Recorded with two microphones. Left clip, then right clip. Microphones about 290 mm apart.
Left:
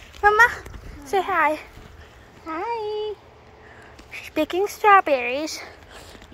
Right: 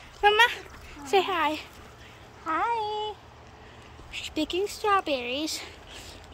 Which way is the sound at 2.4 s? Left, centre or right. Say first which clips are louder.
Right 1 dB; centre.